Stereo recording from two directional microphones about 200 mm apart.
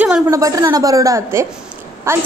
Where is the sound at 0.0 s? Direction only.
10° right (ahead or behind).